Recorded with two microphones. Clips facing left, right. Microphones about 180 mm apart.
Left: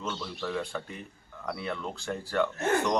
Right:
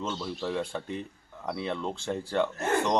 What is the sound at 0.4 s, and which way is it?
Speech, 25° right (ahead or behind).